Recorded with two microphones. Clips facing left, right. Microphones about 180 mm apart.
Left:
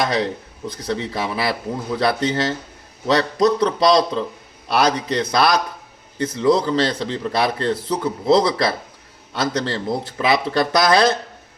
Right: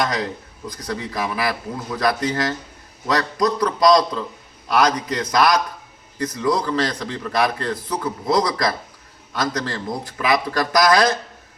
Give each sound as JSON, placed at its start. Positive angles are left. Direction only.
{"t": 0.0, "sound": "a man's voice", "side_deg": 30}